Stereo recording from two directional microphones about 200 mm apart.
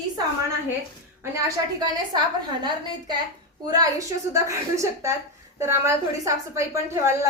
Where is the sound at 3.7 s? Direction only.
15° right (ahead or behind).